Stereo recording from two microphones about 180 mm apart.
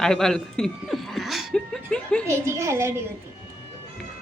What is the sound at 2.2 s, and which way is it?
Speech, 15° right (ahead or behind).